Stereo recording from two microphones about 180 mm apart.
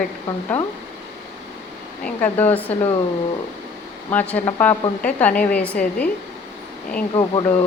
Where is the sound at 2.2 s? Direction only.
10° left (ahead or behind).